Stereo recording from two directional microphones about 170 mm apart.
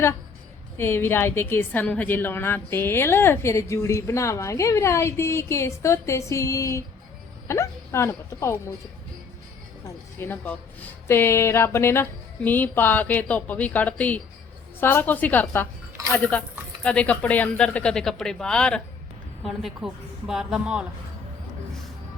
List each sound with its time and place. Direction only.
0.8 s a woman's voice: 15° left (ahead or behind)
9.8 s a woman's voice: 15° left (ahead or behind); by 20.8 s 5° right (ahead or behind)